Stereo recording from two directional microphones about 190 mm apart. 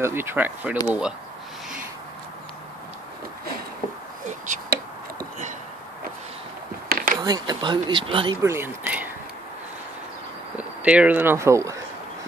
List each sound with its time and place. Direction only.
0.0 s speech: 10° right (ahead or behind)
4.3 s whispering: 40° right (ahead or behind)
6.9 s a sound: 50° right (ahead or behind)
7.2 s speech: 20° right (ahead or behind)
8.4 s speech: 15° right (ahead or behind)
10.5 s speech: 10° right (ahead or behind)